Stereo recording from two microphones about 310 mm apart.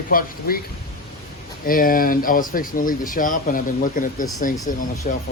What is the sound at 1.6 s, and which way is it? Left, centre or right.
Speech, left.